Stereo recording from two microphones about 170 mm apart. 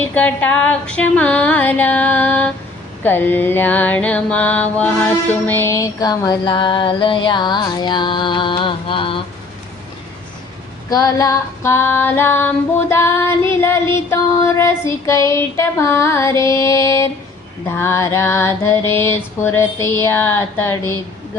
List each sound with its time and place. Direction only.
0.1 s female singing: 10° left (ahead or behind)
3.0 s mantra: 10° left (ahead or behind); by 9.2 s 30° left (ahead or behind)
10.8 s female singing: 20° left (ahead or behind)